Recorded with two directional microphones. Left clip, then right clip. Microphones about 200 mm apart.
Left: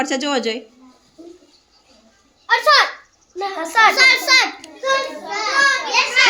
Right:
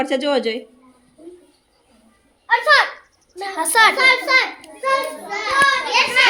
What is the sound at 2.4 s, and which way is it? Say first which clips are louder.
Speech: left 1 dB; 40° left (ahead or behind).